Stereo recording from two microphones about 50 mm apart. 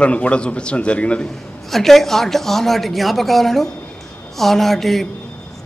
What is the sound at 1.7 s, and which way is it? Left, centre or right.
A woman's voice, centre.